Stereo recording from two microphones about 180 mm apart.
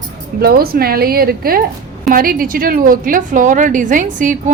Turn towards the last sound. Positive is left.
turn(degrees=-45)  # may be behind; listen again after turning